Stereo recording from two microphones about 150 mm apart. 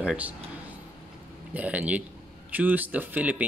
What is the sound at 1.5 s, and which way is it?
Speech, 10° right (ahead or behind).